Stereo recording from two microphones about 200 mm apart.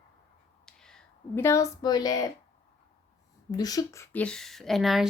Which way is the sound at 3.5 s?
20° left (ahead or behind).